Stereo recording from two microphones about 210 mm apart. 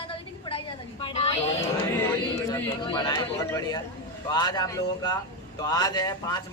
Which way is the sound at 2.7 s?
20° left (ahead or behind).